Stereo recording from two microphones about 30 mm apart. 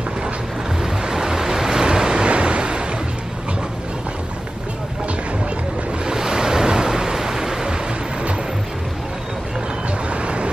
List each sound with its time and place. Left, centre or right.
1.0 s vehicle: right
2.1 s waves: right
6.0 s waves: right
7.6 s train: right
10.0 s vehicle: right